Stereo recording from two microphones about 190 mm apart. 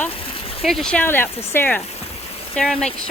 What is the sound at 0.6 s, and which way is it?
A woman's voice, centre (ahead or behind).